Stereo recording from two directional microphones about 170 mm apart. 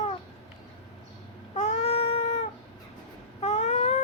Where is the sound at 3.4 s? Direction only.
40° left (ahead or behind).